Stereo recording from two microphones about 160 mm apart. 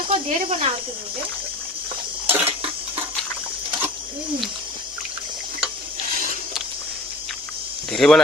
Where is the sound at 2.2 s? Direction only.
10° right (ahead or behind).